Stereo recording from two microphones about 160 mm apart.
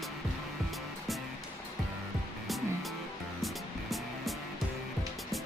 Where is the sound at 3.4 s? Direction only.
Centre (ahead or behind).